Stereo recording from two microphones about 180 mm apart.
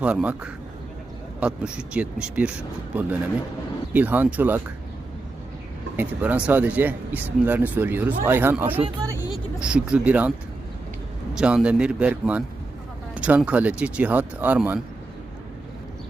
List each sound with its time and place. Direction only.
0.0 s speech: 5° right (ahead or behind)
6.0 s speech: 10° right (ahead or behind)
8.8 s speech: 20° right (ahead or behind)
9.6 s speech: 5° right (ahead or behind)
11.3 s speech: 5° right (ahead or behind)